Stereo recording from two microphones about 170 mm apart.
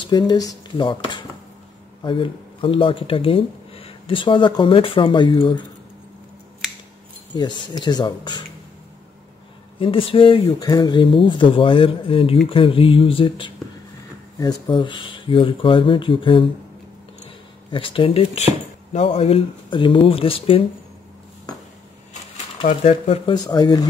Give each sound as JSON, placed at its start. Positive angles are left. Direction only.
{"t": 0.3, "sound": "speech", "side_deg": 25}
{"t": 7.3, "sound": "speech", "side_deg": 25}
{"t": 9.8, "sound": "speech", "side_deg": 30}
{"t": 17.6, "sound": "speech", "side_deg": 30}
{"t": 22.7, "sound": "speech", "side_deg": 40}
{"t": 23.3, "sound": "speech", "side_deg": 25}